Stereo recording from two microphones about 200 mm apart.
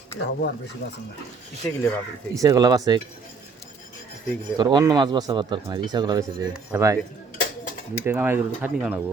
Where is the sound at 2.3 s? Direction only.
20° right (ahead or behind).